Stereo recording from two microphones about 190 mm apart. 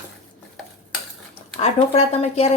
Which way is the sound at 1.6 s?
35° left (ahead or behind).